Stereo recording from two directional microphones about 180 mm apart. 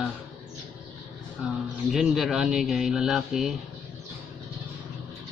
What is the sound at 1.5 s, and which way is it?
Speech, centre (ahead or behind).